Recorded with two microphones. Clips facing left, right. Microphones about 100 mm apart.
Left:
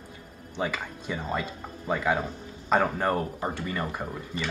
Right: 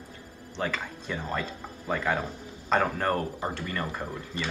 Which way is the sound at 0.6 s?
10° left (ahead or behind).